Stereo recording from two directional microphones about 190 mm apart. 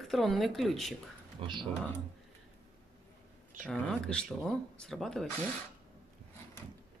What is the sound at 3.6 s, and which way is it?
Speech, 5° left (ahead or behind).